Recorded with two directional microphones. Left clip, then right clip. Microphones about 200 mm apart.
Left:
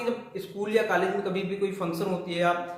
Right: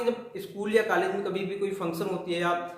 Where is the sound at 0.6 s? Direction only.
25° right (ahead or behind).